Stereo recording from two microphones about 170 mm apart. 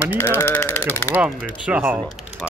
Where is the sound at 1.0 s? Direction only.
10° right (ahead or behind).